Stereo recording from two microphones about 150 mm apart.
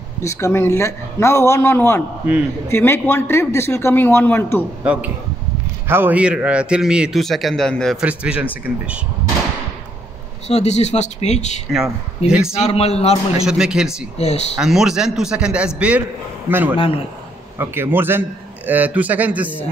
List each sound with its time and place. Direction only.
0.2 s a man's voice: 20° left (ahead or behind)
5.9 s a man's voice: 15° right (ahead or behind); by 8.0 s 5° left (ahead or behind)
8.0 s a man's voice: 5° right (ahead or behind)
10.5 s speech: 50° left (ahead or behind)
12.3 s speech: 5° right (ahead or behind)
12.5 s speech: 45° left (ahead or behind)
13.4 s speech: 5° right (ahead or behind)
14.1 s speech: 45° left (ahead or behind)
14.6 s a man's voice: 5° right (ahead or behind)
16.7 s a man's voice: 35° left (ahead or behind)
17.6 s a man's voice: 15° right (ahead or behind)